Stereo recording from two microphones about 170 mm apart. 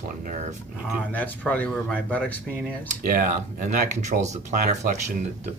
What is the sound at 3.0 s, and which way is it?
Speech, 55° right (ahead or behind).